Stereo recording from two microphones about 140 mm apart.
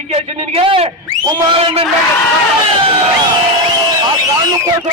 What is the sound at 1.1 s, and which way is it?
Speech, 30° right (ahead or behind).